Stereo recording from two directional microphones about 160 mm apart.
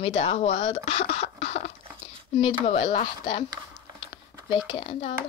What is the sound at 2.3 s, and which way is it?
Speech, 30° left (ahead or behind).